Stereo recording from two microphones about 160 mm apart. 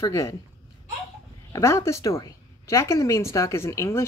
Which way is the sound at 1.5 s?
20° left (ahead or behind).